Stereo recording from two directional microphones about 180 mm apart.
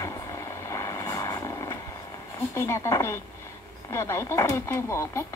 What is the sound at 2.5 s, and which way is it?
Speech, 15° left (ahead or behind).